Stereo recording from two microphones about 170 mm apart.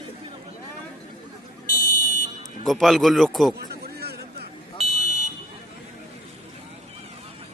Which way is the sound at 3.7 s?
70° right (ahead or behind).